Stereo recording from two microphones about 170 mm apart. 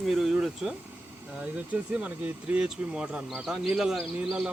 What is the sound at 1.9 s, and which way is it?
Speech, 5° right (ahead or behind).